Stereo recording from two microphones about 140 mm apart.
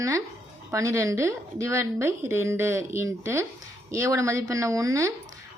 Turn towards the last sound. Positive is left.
turn(degrees=-25)  # may be behind; listen again after turning